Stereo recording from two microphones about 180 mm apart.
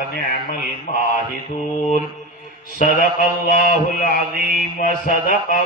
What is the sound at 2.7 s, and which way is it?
A man's voice, 45° left (ahead or behind).